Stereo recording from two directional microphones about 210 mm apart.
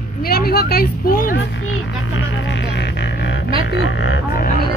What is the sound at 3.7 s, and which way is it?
Speech, 60° left (ahead or behind).